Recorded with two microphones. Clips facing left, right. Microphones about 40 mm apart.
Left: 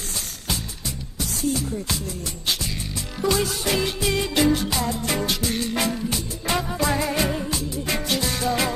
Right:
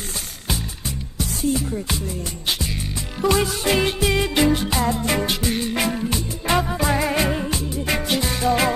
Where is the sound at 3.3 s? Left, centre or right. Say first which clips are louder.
Right 3 dB; right.